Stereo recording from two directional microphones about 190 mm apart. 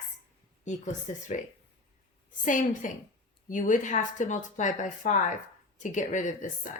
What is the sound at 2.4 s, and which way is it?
A woman's voice, 45° left (ahead or behind).